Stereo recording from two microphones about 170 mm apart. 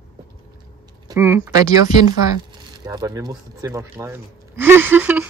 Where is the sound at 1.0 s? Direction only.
15° right (ahead or behind).